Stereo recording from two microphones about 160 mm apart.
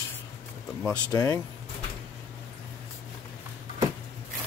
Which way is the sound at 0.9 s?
20° left (ahead or behind).